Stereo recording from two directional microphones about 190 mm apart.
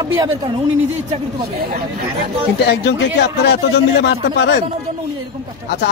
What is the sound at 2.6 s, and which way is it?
Speech, 60° left (ahead or behind).